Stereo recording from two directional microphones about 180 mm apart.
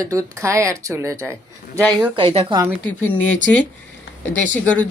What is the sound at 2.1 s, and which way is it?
Speech, 30° right (ahead or behind).